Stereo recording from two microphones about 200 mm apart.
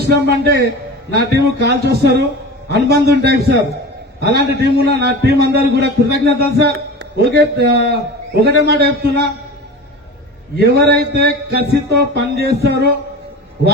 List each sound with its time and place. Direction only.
0.0 s a man's voice: 55° right (ahead or behind)
10.7 s a man's voice: 55° right (ahead or behind)